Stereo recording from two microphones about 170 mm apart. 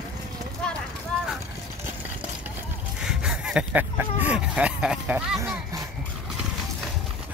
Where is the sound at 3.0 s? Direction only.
5° right (ahead or behind).